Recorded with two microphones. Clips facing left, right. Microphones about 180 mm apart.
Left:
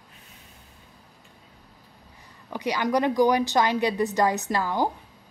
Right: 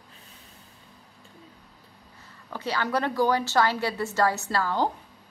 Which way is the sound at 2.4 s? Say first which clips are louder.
Left 3 dB; 15° left (ahead or behind).